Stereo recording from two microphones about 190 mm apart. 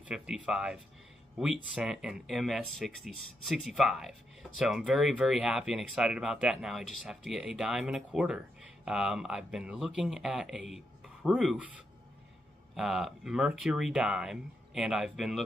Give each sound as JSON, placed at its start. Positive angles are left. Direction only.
{"t": 0.0, "sound": "speech", "side_deg": -5}
{"t": 12.7, "sound": "speech", "side_deg": 0}